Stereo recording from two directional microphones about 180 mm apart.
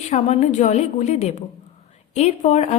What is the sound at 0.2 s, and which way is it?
A woman's voice, 40° left (ahead or behind).